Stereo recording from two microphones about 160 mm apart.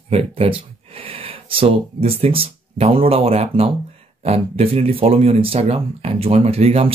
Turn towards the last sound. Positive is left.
turn(degrees=-40)  # may be behind; listen again after turning